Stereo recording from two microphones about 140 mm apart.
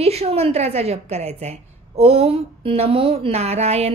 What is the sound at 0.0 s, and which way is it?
A woman's voice, 45° right (ahead or behind).